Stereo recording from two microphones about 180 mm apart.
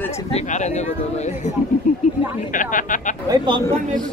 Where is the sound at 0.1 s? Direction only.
35° left (ahead or behind).